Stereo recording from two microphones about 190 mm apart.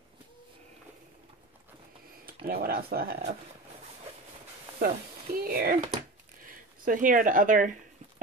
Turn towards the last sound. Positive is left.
turn(degrees=-45)  # may be behind; listen again after turning